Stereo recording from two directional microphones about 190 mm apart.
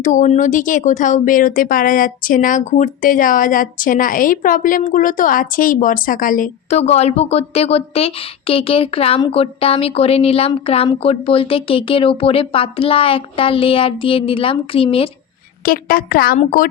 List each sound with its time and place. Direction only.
0.0 s speech: 40° left (ahead or behind)
15.6 s a woman's voice: 50° left (ahead or behind)